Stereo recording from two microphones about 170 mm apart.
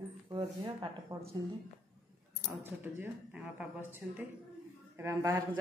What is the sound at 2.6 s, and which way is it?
A woman's voice, 10° right (ahead or behind).